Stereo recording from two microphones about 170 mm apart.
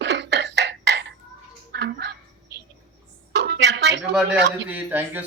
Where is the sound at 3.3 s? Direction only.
85° right.